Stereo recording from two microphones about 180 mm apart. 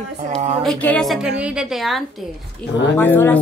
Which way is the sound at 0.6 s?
5° left (ahead or behind).